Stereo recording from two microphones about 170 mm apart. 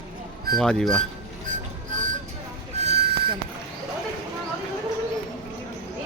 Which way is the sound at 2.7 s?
35° right (ahead or behind).